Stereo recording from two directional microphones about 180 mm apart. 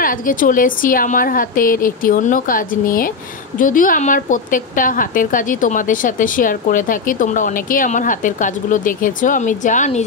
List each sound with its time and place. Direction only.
0.0 s a woman's voice: 50° left (ahead or behind)